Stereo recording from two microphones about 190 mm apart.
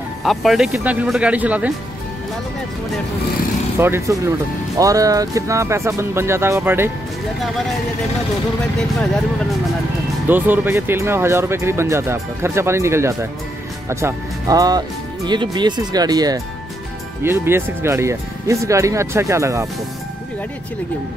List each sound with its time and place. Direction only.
0.2 s speech: centre (ahead or behind)
3.8 s speech: 15° right (ahead or behind)
8.7 s speech: centre (ahead or behind)
10.2 s speech: 10° right (ahead or behind)